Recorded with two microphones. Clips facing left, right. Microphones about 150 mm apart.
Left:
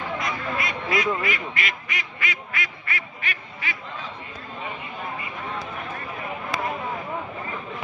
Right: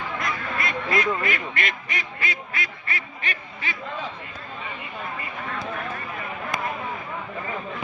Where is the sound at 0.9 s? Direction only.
50° right (ahead or behind).